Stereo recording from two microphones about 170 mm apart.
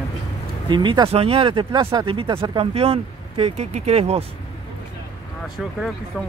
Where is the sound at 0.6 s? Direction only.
25° right (ahead or behind).